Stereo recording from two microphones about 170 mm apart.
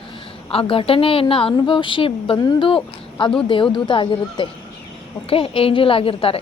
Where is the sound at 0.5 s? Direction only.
30° left (ahead or behind).